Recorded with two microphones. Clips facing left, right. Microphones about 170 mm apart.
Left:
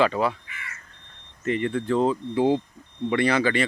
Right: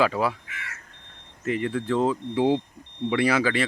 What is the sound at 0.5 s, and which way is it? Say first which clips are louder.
Smoke detector: right 2 dB; 80° right.